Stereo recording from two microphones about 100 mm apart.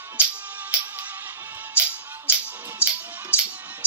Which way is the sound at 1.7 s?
15° right (ahead or behind).